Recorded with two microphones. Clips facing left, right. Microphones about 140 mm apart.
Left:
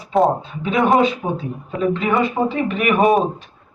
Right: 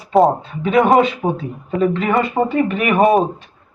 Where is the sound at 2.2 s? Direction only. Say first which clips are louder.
Right 2 dB; 50° right (ahead or behind).